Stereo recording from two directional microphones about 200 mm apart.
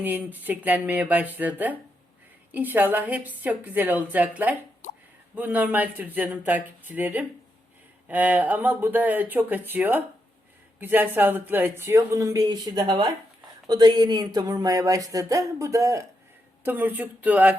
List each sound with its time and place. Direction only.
0.0 s speech: 10° right (ahead or behind)
4.8 s a sound: 40° left (ahead or behind)
5.3 s speech: 10° right (ahead or behind)